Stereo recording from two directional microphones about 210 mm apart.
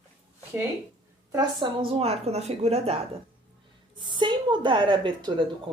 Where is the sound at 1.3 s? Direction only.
20° right (ahead or behind).